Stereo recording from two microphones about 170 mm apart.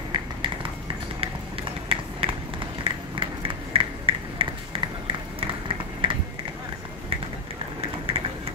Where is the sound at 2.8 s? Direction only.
30° right (ahead or behind).